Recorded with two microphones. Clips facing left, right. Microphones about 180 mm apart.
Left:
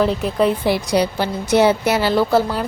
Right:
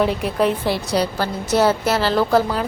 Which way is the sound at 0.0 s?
5° right (ahead or behind).